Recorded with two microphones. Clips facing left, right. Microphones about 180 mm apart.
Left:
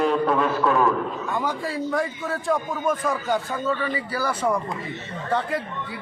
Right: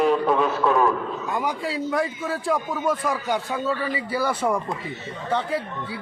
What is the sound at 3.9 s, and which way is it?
Speech, 25° right (ahead or behind).